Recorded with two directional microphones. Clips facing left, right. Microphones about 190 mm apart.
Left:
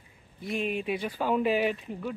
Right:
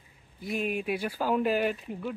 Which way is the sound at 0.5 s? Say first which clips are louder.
Even; 5° right (ahead or behind).